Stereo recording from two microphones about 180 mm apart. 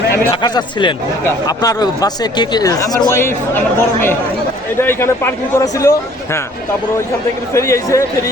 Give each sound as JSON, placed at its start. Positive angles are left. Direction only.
{"t": 0.3, "sound": "speech", "side_deg": 25}
{"t": 7.5, "sound": "speech", "side_deg": 15}